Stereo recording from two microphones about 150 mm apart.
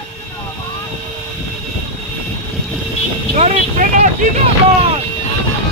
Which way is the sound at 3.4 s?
55° right (ahead or behind).